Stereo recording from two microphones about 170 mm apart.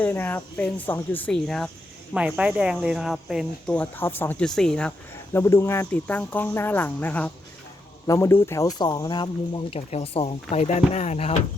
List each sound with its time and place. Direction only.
0.0 s speech: 10° left (ahead or behind); by 11.3 s 40° left (ahead or behind)